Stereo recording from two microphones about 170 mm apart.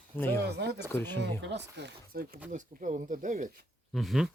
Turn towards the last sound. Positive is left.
turn(degrees=0)  # may be behind; listen again after turning